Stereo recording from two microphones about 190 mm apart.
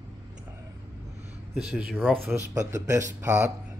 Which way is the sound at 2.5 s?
15° right (ahead or behind).